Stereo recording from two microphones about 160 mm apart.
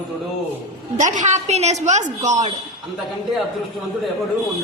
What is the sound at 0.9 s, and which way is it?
A woman's voice, 50° right (ahead or behind).